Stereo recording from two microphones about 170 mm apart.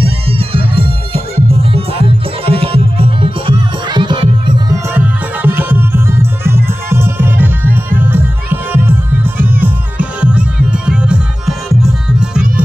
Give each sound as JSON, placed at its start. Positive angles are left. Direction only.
{"t": 0.0, "sound": "music", "side_deg": -35}
{"t": 4.8, "sound": "music", "side_deg": -10}